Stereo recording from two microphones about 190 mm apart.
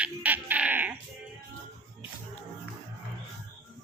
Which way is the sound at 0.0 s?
10° right (ahead or behind).